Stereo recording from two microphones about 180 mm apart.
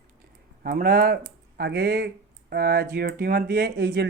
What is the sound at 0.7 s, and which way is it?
Speech, 55° right (ahead or behind).